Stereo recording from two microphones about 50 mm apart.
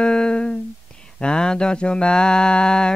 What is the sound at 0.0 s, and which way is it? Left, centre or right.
Humming, centre.